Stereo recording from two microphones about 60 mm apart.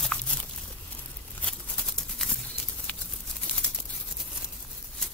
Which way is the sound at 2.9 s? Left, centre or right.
Left.